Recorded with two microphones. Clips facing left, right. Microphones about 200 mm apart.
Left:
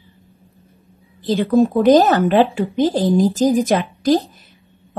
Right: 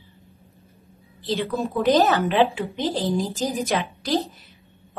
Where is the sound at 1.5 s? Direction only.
45° left (ahead or behind).